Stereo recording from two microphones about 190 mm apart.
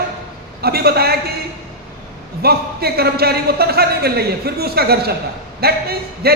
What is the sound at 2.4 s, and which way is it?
A man's voice, 55° right (ahead or behind).